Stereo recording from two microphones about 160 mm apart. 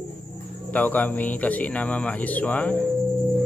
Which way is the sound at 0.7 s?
10° left (ahead or behind).